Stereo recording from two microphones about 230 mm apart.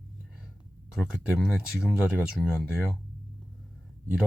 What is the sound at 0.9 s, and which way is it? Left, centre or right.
Speech, centre.